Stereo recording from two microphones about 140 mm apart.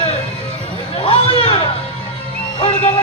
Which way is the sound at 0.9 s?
45° left (ahead or behind).